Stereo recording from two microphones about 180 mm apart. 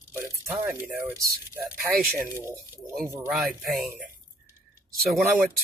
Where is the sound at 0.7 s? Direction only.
Centre (ahead or behind).